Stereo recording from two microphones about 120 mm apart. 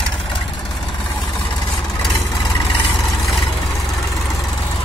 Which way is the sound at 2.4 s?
40° left (ahead or behind).